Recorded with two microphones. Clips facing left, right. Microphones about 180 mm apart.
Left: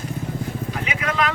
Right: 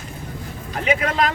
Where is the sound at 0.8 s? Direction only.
45° right (ahead or behind).